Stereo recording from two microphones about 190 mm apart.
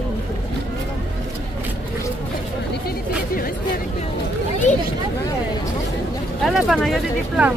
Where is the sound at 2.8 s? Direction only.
50° left (ahead or behind).